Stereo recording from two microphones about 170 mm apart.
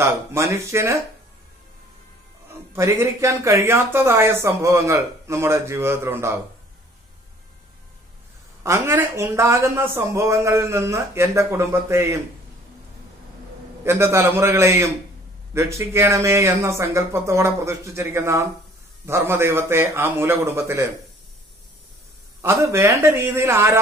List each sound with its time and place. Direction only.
0.0 s speech: 15° right (ahead or behind)
2.7 s speech: 15° right (ahead or behind)
8.6 s speech: 15° right (ahead or behind)
13.8 s speech: 15° right (ahead or behind)
22.4 s speech: 15° right (ahead or behind)